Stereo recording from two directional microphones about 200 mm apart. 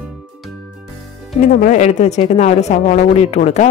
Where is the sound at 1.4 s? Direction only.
40° left (ahead or behind).